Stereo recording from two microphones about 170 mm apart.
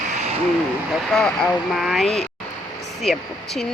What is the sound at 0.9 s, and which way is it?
Speech, 5° left (ahead or behind).